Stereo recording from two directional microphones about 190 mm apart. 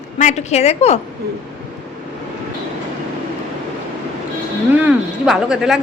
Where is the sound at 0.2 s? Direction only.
40° left (ahead or behind).